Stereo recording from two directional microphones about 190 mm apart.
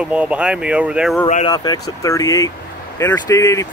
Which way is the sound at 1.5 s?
20° left (ahead or behind).